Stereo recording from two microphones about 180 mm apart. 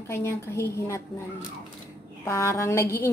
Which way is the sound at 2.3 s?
15° left (ahead or behind).